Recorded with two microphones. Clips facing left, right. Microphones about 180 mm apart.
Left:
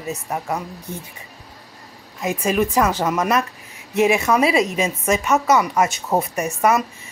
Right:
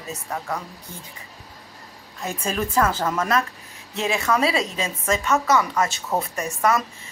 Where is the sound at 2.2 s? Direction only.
15° left (ahead or behind).